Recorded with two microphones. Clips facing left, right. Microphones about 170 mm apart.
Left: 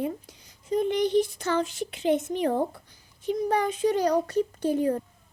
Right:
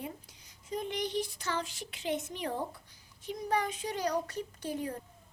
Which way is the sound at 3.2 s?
30° left (ahead or behind).